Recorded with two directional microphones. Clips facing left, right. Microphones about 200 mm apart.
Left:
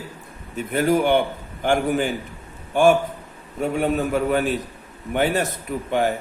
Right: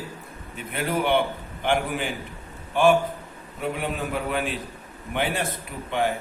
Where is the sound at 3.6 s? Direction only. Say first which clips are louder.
Left 7 dB; 45° left (ahead or behind).